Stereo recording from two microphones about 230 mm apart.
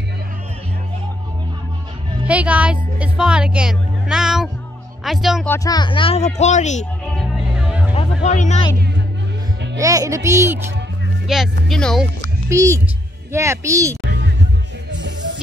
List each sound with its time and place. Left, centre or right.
2.2 s a woman's voice: centre
5.5 s speech: centre; by 6.9 s left
7.2 s music: centre
7.9 s music: left
9.8 s a child's voice: centre
11.2 s speech: centre
12.4 s a child's voice: centre
14.0 s music: right